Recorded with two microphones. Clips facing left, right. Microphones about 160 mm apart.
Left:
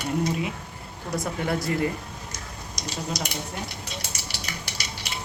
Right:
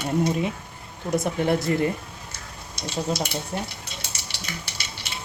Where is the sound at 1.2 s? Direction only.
25° right (ahead or behind).